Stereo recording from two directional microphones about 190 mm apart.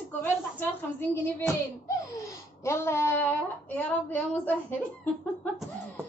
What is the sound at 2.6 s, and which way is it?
A woman's voice, 15° left (ahead or behind).